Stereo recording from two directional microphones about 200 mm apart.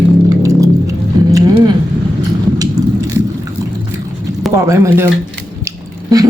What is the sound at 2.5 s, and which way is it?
Biting, 20° right (ahead or behind).